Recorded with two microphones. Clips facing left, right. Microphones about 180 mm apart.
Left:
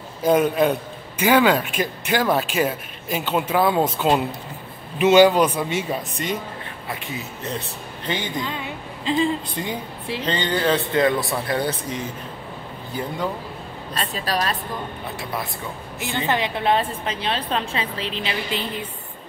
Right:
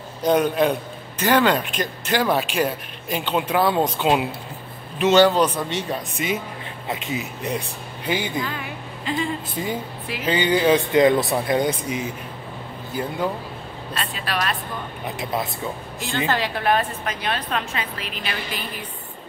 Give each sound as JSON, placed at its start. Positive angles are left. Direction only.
{"t": 0.2, "sound": "a man's voice", "side_deg": 5}
{"t": 6.1, "sound": "speech", "side_deg": -5}
{"t": 6.9, "sound": "speech", "side_deg": -20}
{"t": 8.4, "sound": "a woman's voice", "side_deg": 25}
{"t": 9.6, "sound": "a man's voice", "side_deg": -5}
{"t": 14.1, "sound": "a woman's voice", "side_deg": 35}
{"t": 15.0, "sound": "speech", "side_deg": -20}
{"t": 16.3, "sound": "a woman's voice", "side_deg": 20}